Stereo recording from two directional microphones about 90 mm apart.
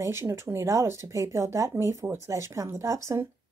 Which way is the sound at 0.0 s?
35° right (ahead or behind).